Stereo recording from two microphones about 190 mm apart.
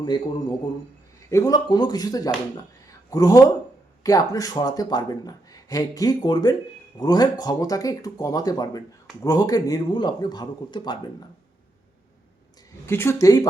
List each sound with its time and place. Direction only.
0.0 s speech: 25° left (ahead or behind)
12.8 s speech: 15° left (ahead or behind)